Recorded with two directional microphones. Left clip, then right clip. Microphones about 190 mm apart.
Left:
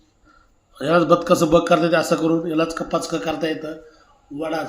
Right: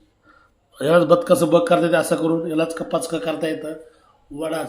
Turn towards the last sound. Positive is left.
turn(degrees=-15)  # may be behind; listen again after turning